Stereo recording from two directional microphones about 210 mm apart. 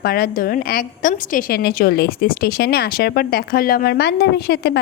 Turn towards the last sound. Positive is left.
turn(degrees=50)  # may be behind; listen again after turning